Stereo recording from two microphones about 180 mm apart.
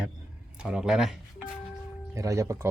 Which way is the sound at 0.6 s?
5° right (ahead or behind).